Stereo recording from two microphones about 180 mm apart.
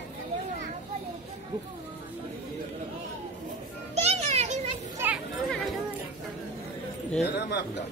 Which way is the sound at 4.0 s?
40° right (ahead or behind).